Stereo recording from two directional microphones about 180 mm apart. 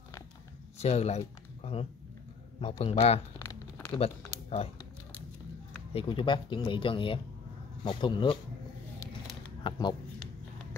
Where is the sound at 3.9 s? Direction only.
35° left (ahead or behind).